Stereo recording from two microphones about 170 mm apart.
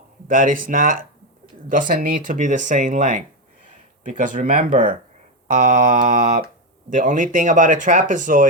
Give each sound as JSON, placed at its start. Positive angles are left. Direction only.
{"t": 0.3, "sound": "speech", "side_deg": -55}